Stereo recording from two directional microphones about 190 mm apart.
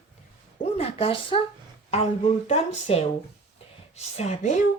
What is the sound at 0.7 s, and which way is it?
Speech, 30° left (ahead or behind).